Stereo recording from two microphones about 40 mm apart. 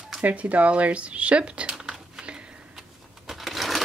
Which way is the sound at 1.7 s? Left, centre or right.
Centre.